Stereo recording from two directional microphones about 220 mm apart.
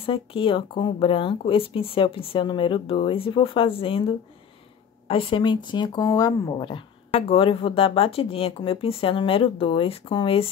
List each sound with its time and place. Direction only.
0.0 s speech: 25° left (ahead or behind)